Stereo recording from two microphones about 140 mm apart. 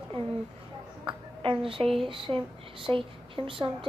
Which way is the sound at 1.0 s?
35° right (ahead or behind).